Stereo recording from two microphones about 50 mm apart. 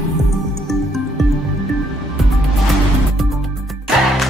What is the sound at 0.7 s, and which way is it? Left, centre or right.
Music, centre.